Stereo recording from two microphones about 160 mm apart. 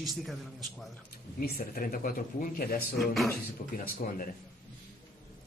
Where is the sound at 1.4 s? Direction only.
70° left (ahead or behind).